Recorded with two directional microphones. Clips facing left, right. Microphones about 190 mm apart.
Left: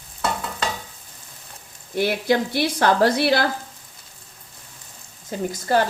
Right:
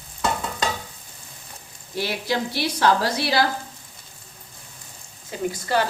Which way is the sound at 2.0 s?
55° left (ahead or behind).